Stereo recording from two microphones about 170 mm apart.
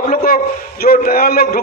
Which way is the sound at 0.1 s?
60° left (ahead or behind).